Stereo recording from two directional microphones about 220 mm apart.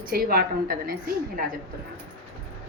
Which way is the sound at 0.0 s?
40° right (ahead or behind).